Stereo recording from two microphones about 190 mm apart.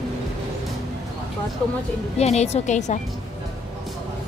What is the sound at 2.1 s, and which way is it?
Speech, 35° left (ahead or behind).